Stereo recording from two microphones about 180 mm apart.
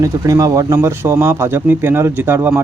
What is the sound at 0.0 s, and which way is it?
Speech, 20° right (ahead or behind).